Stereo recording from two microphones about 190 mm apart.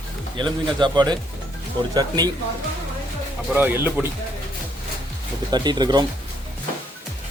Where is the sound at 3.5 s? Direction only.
10° right (ahead or behind).